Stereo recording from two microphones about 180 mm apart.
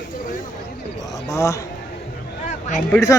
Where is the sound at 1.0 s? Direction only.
15° left (ahead or behind).